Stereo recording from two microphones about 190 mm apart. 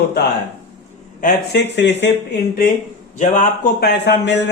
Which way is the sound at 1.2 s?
60° left (ahead or behind).